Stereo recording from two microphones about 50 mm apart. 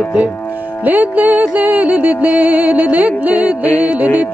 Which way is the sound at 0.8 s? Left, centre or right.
Right.